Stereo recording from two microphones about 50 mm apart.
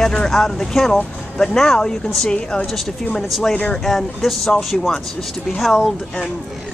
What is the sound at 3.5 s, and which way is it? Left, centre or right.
Speech, centre.